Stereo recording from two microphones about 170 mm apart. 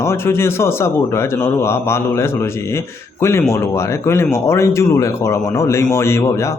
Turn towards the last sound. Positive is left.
turn(degrees=15)  # may be behind; listen again after turning